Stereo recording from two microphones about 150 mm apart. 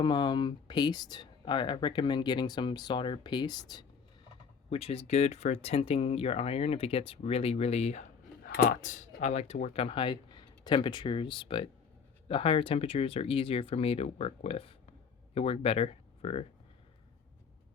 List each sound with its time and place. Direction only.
0.0 s speech: 30° left (ahead or behind)
4.7 s speech: 40° left (ahead or behind)
8.4 s speech: 85° left; by 16.5 s 40° left (ahead or behind)